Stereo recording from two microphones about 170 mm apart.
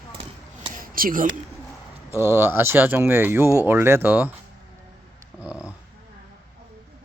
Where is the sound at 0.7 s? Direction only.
55° right (ahead or behind).